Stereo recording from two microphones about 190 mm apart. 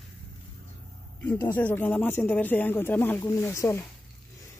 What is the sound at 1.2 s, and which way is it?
Speech, 10° left (ahead or behind).